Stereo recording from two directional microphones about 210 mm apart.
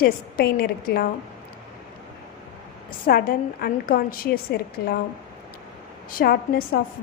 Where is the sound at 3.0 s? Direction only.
45° left (ahead or behind).